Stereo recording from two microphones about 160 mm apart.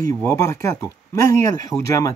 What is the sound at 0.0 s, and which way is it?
Speech, 20° left (ahead or behind).